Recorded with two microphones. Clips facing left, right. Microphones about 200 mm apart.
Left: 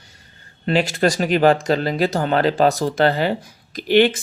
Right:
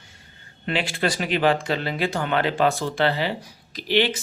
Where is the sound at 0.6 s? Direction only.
40° left (ahead or behind).